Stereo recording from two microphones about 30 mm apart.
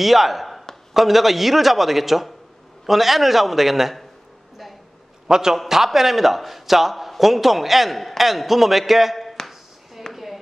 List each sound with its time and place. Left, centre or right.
0.0 s a man's voice: centre
5.3 s a man's voice: right
5.9 s a man's voice: centre
10.1 s a sound: centre